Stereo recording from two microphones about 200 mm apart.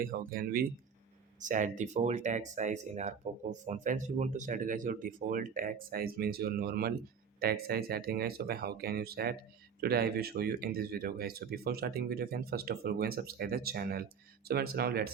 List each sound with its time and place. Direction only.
0.0 s speech: 45° right (ahead or behind)